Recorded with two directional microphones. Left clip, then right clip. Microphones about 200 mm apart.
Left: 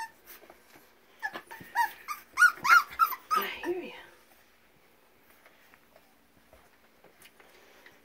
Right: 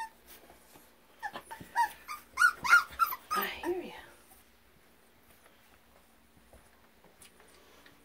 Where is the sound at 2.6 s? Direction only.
30° left (ahead or behind).